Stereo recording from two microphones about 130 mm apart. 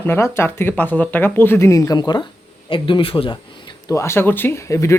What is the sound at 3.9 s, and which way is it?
Speech, 20° left (ahead or behind).